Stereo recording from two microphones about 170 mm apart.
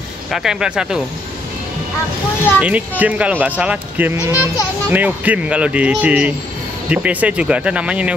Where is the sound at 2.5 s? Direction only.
10° right (ahead or behind).